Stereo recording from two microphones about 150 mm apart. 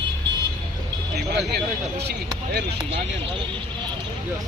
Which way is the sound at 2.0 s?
90° right.